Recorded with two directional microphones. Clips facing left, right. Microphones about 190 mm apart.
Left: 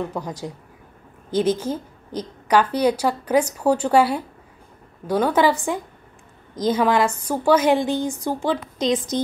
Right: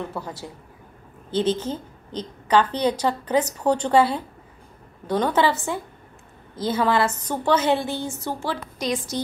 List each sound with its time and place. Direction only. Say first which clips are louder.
0.1 s a woman's voice: left 4 dB; 15° left (ahead or behind)